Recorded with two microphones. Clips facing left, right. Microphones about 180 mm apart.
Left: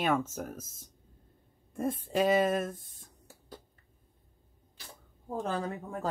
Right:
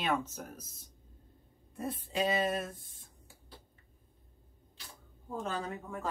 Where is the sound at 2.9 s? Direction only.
45° left (ahead or behind).